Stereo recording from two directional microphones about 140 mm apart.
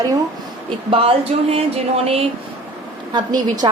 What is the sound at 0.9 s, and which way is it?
A woman's voice, 45° right (ahead or behind).